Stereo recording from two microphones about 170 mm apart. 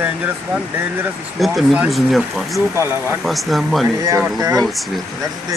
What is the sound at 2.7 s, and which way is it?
Speech, 15° right (ahead or behind).